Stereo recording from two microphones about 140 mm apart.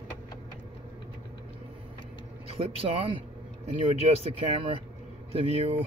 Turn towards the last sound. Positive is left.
turn(degrees=-45)  # may be behind; listen again after turning